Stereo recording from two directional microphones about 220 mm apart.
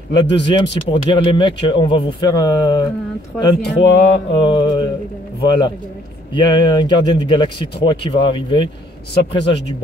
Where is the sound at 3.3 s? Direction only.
Centre (ahead or behind).